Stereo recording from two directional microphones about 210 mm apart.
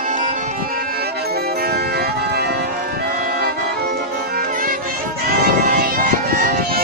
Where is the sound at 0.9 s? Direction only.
50° right (ahead or behind).